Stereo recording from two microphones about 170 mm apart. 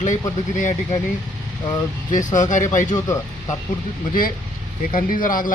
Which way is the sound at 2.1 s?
50° left (ahead or behind).